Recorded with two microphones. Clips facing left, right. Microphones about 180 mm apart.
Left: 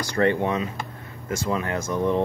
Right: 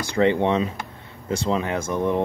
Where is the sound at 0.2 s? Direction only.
20° right (ahead or behind).